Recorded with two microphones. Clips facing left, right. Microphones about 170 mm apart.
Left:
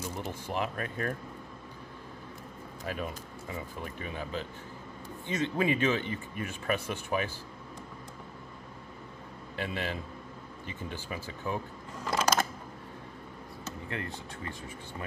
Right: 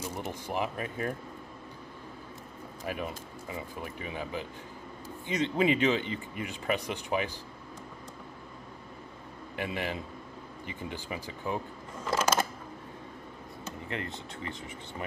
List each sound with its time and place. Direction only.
0.3 s speech: 15° right (ahead or behind)
2.8 s speech: 15° right (ahead or behind)
9.6 s speech: 15° right (ahead or behind)
12.2 s a sound: 10° right (ahead or behind)
13.7 s speech: 20° right (ahead or behind)